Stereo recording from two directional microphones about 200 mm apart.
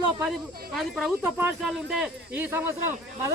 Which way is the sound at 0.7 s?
Centre (ahead or behind).